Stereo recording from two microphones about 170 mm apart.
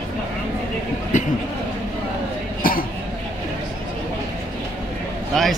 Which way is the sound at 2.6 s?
55° left (ahead or behind).